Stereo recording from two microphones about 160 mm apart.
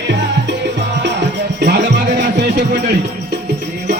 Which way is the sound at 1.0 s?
90° right.